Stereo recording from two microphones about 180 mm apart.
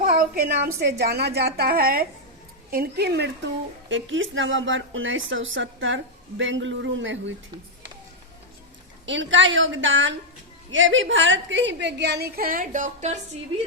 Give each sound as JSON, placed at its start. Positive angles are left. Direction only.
{"t": 0.0, "sound": "a woman's voice", "side_deg": -55}
{"t": 3.8, "sound": "a woman's voice", "side_deg": -90}
{"t": 9.0, "sound": "a woman's voice", "side_deg": -90}